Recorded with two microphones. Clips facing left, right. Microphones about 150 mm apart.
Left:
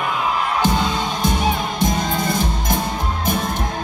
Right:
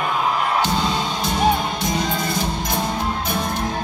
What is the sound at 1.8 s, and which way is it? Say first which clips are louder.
Music: left 2 dB; 50° left (ahead or behind).